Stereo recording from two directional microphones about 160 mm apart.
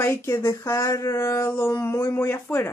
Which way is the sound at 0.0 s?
15° left (ahead or behind).